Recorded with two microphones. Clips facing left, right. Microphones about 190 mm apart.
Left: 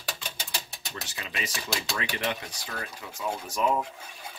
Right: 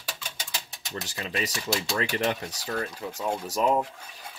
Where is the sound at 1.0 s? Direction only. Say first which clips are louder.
Right 6 dB; 40° right (ahead or behind).